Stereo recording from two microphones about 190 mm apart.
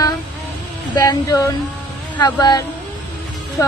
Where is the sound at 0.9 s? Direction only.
20° left (ahead or behind).